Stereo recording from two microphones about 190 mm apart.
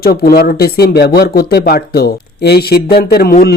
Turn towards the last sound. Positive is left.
turn(degrees=55)  # may be behind; listen again after turning